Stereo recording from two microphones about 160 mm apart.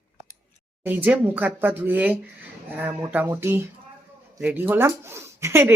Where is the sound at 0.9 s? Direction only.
10° right (ahead or behind).